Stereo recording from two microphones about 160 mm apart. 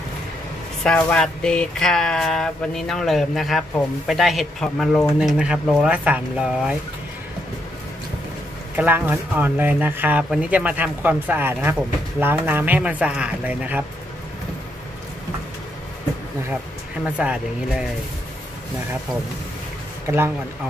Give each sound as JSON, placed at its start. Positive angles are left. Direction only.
{"t": 0.8, "sound": "speech", "side_deg": 5}
{"t": 8.7, "sound": "speech", "side_deg": -10}
{"t": 17.0, "sound": "speech", "side_deg": -5}
{"t": 20.1, "sound": "speech", "side_deg": -20}